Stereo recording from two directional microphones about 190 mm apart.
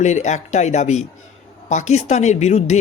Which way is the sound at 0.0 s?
40° left (ahead or behind).